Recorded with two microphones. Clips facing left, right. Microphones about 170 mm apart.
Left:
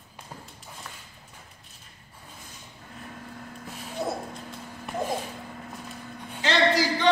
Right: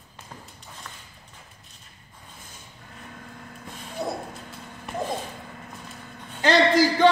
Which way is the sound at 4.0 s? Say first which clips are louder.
Even; centre (ahead or behind).